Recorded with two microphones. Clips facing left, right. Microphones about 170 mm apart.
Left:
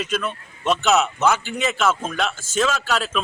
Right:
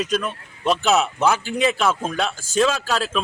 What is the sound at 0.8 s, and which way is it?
A man's voice, 35° right (ahead or behind).